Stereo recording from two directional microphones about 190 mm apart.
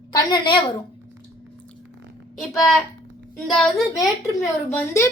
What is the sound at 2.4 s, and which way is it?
A child's voice, centre (ahead or behind).